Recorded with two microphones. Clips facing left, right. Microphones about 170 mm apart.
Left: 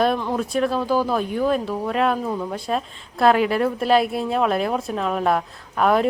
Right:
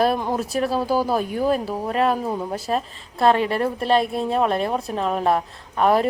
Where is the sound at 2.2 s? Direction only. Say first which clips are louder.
Even; 20° right (ahead or behind).